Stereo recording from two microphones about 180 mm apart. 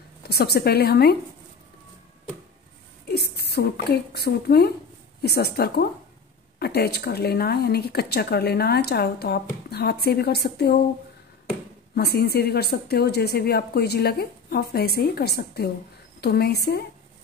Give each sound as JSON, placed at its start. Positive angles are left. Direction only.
{"t": 0.2, "sound": "a woman's voice", "side_deg": 60}
{"t": 3.1, "sound": "a woman's voice", "side_deg": 60}
{"t": 11.9, "sound": "a woman's voice", "side_deg": 65}